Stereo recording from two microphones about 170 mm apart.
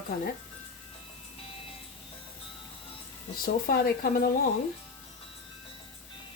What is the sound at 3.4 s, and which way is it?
Speech, 60° left (ahead or behind).